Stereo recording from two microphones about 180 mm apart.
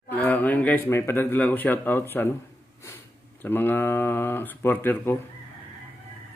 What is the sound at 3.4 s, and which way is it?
Speech, 10° left (ahead or behind).